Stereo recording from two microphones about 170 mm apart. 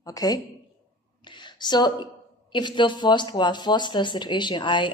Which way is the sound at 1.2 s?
25° left (ahead or behind).